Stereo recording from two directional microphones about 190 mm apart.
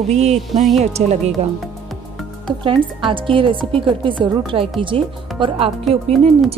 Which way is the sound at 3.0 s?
25° right (ahead or behind).